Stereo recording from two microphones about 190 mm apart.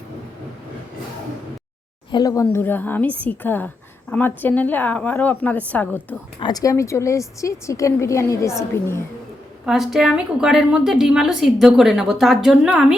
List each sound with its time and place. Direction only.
2.0 s a woman's voice: 20° left (ahead or behind)
6.4 s a woman's voice: 20° left (ahead or behind)
9.6 s a woman's voice: centre (ahead or behind)